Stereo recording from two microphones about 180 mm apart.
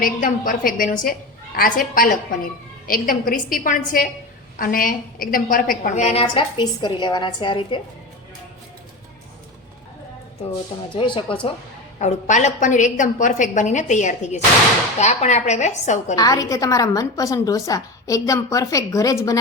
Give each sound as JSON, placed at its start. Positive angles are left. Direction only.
{"t": 0.0, "sound": "a woman's voice", "side_deg": 50}
{"t": 10.8, "sound": "a woman's voice", "side_deg": 25}
{"t": 11.9, "sound": "a woman's voice", "side_deg": 40}
{"t": 16.1, "sound": "a woman's voice", "side_deg": 20}